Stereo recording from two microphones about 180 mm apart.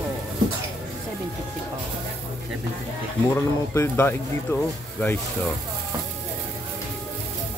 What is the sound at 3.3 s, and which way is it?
Speech, 15° left (ahead or behind).